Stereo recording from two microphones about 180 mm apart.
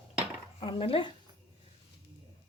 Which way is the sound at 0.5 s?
30° left (ahead or behind).